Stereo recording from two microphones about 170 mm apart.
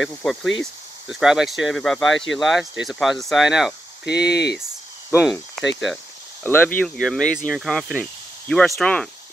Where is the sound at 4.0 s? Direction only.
80° left.